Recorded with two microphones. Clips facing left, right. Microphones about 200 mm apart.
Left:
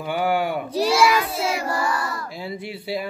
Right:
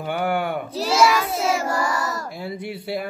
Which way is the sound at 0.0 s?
55° right (ahead or behind).